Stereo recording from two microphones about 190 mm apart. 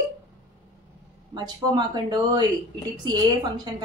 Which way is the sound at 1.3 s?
20° right (ahead or behind).